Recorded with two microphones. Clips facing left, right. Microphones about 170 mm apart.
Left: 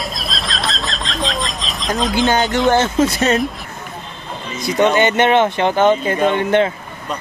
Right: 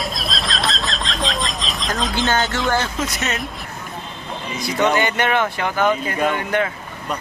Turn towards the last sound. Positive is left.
turn(degrees=25)  # may be behind; listen again after turning